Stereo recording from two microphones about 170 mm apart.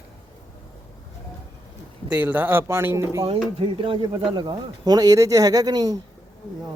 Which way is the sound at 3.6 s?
30° right (ahead or behind).